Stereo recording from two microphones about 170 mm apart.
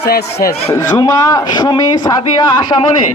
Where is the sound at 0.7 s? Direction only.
20° left (ahead or behind).